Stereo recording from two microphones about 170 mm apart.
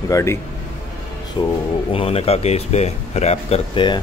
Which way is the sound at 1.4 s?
25° left (ahead or behind).